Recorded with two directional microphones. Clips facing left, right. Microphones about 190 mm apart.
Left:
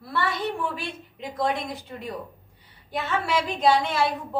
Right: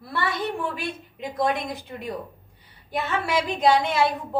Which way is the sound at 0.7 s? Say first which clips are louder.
Right 3 dB; 15° right (ahead or behind).